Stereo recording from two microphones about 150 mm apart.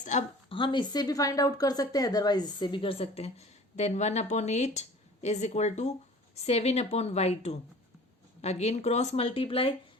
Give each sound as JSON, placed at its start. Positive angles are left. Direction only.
{"t": 0.0, "sound": "speech", "side_deg": 55}
{"t": 0.5, "sound": "speech", "side_deg": 30}